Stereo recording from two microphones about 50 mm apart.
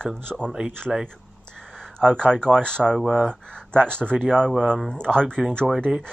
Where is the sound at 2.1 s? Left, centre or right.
Centre.